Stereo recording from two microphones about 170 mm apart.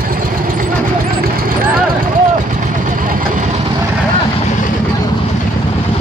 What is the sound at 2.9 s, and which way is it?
Vehicle, 50° right (ahead or behind).